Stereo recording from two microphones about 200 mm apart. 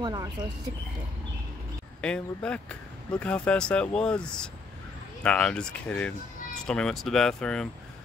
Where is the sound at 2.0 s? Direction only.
5° left (ahead or behind).